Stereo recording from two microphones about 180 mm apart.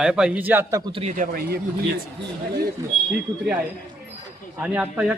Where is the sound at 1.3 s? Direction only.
60° right (ahead or behind).